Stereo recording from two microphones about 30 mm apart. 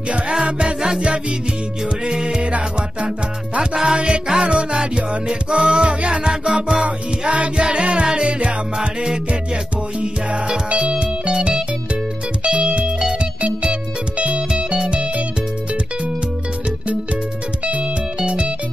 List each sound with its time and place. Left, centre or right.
0.3 s music: right
0.7 s music: right
2.0 s music: right
3.7 s music: right
8.7 s music: right
11.3 s music: right
12.4 s music: right
18.2 s music: right